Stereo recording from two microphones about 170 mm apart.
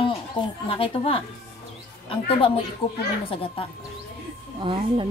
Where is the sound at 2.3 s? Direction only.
30° left (ahead or behind).